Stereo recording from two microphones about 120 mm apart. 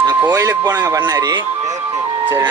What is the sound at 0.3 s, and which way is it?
Speech, 25° right (ahead or behind).